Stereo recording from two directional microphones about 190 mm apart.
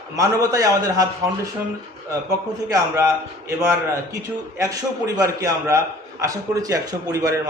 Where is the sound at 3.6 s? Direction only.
15° right (ahead or behind).